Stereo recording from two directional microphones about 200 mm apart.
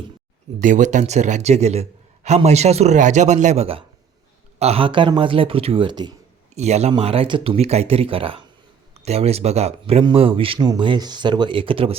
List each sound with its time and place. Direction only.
0.6 s a man's voice: 40° right (ahead or behind); by 6.1 s 20° right (ahead or behind)
6.5 s a man's voice: 35° right (ahead or behind)